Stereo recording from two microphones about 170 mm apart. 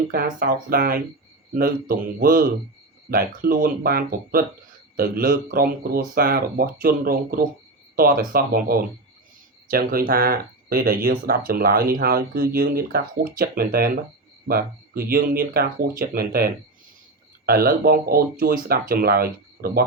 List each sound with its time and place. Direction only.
0.1 s speech: 60° right (ahead or behind)